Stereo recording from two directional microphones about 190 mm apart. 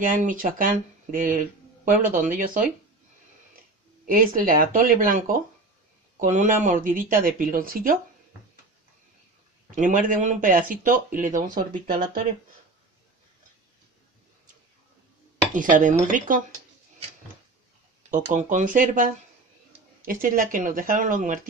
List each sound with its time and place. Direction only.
0.0 s speech: 45° right (ahead or behind)
4.0 s speech: 45° right (ahead or behind)
9.7 s speech: 45° right (ahead or behind)
15.5 s speech: 45° right (ahead or behind)
18.1 s speech: 40° right (ahead or behind)